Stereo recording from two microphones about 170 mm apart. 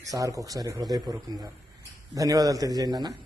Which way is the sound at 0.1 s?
20° right (ahead or behind).